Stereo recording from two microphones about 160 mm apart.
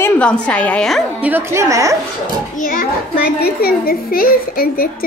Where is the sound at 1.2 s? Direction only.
15° right (ahead or behind).